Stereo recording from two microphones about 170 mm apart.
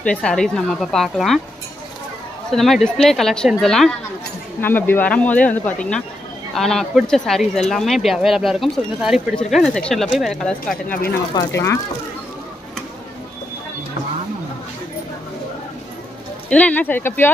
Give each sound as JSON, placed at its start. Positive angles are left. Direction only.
{"t": 0.0, "sound": "speech", "side_deg": 5}
{"t": 2.5, "sound": "speech", "side_deg": 0}
{"t": 11.3, "sound": "speech", "side_deg": 15}
{"t": 16.4, "sound": "speech", "side_deg": 10}